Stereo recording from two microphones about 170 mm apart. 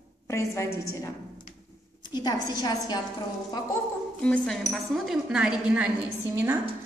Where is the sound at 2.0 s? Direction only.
25° left (ahead or behind).